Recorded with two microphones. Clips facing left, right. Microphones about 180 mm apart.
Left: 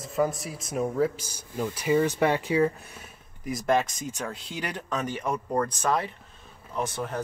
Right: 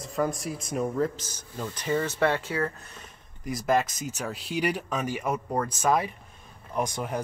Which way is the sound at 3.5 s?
Centre (ahead or behind).